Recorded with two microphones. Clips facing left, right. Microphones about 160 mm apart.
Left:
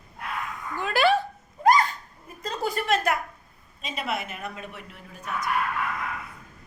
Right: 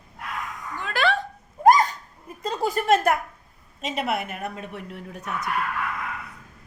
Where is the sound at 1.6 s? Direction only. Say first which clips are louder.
Right 3 dB; 45° right (ahead or behind).